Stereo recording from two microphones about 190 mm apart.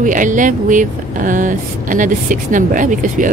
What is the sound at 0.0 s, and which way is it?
Speech, 45° right (ahead or behind).